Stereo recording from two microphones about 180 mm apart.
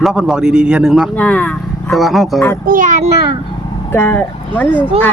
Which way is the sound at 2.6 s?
50° right (ahead or behind).